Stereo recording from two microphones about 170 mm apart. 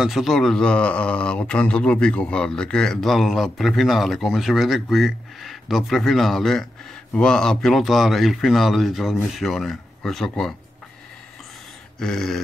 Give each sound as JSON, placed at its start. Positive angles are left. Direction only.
{"t": 0.0, "sound": "speech", "side_deg": 0}
{"t": 12.0, "sound": "speech", "side_deg": 5}